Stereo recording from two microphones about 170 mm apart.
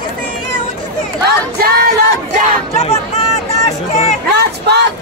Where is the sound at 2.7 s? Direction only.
40° left (ahead or behind).